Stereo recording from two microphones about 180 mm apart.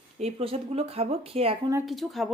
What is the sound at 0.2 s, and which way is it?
Speech, 35° right (ahead or behind).